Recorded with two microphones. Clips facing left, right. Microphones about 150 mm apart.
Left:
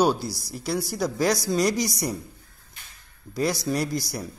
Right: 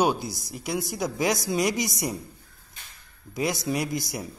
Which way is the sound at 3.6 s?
15° right (ahead or behind).